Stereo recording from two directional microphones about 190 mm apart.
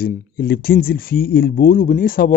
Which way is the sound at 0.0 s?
50° left (ahead or behind).